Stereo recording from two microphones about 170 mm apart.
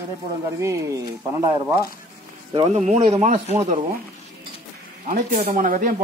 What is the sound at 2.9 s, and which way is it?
Speech, 40° right (ahead or behind).